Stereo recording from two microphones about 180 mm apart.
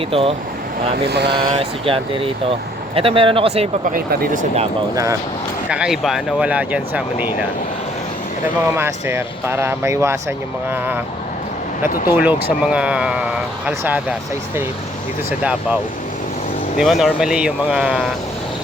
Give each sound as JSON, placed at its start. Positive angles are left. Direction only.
{"t": 0.1, "sound": "speech", "side_deg": -30}
{"t": 1.0, "sound": "speech", "side_deg": -65}
{"t": 1.5, "sound": "speech", "side_deg": -30}
{"t": 3.9, "sound": "speech", "side_deg": -55}
{"t": 5.6, "sound": "speech", "side_deg": -5}
{"t": 8.7, "sound": "speech", "side_deg": -15}
{"t": 12.1, "sound": "speech", "side_deg": -10}
{"t": 16.7, "sound": "speech", "side_deg": 0}